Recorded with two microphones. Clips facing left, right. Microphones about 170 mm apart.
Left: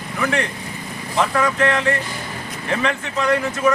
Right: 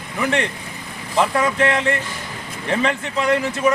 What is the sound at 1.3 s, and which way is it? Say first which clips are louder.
Speech: even; 30° right (ahead or behind).